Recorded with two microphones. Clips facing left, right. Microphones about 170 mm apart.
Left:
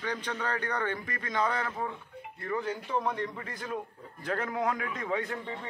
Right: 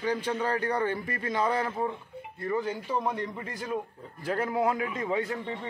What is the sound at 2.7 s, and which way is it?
A man's voice, 5° right (ahead or behind).